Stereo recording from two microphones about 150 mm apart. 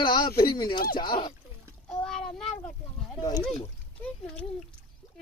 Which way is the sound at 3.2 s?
25° left (ahead or behind).